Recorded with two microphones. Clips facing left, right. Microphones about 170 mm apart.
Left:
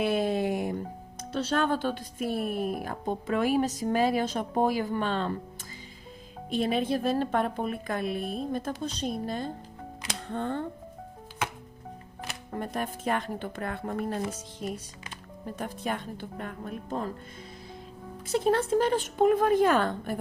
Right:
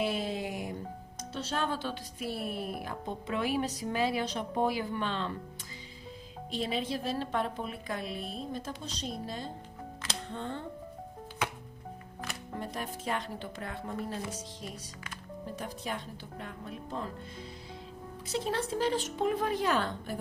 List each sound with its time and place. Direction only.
0.0 s music: 55° left (ahead or behind)
1.3 s speech: 80° left; by 5.3 s 45° left (ahead or behind)
6.5 s speech: 55° left (ahead or behind)
12.5 s a woman's voice: 50° left (ahead or behind)
18.3 s speech: 50° left (ahead or behind)